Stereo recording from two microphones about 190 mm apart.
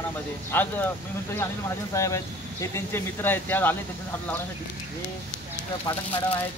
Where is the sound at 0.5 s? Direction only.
10° left (ahead or behind).